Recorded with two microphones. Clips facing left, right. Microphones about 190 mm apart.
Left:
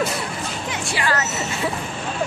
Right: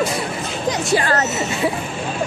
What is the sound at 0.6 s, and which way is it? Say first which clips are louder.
Speech: right 7 dB; 40° right (ahead or behind).